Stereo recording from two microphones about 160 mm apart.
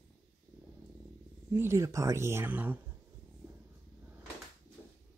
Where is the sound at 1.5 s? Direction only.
15° right (ahead or behind).